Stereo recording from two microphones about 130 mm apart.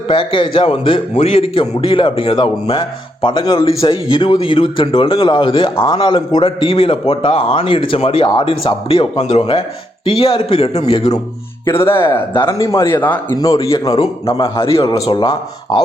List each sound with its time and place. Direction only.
0.1 s a man's voice: 40° left (ahead or behind)
11.6 s a man's voice: 20° left (ahead or behind)
12.3 s a man's voice: 40° left (ahead or behind)
12.5 s a man's voice: 20° left (ahead or behind)
13.3 s a man's voice: 25° left (ahead or behind)
14.4 s a man's voice: 45° left (ahead or behind)